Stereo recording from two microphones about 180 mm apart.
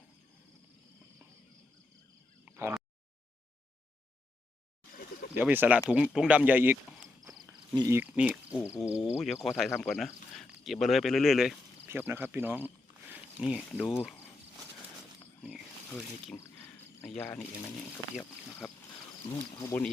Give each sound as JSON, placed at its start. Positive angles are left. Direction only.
{"t": 2.4, "sound": "a sound", "side_deg": -15}
{"t": 5.3, "sound": "speech", "side_deg": -10}
{"t": 7.8, "sound": "speech", "side_deg": -15}
{"t": 11.9, "sound": "speech", "side_deg": -10}
{"t": 16.4, "sound": "cricket", "side_deg": 15}
{"t": 18.6, "sound": "speech", "side_deg": 0}
{"t": 19.5, "sound": "speech", "side_deg": 15}